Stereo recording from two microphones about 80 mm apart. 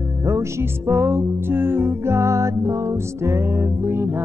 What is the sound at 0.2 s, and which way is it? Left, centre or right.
Music, right.